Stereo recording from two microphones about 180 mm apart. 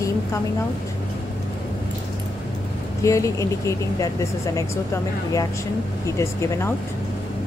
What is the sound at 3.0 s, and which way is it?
Speech, 15° left (ahead or behind).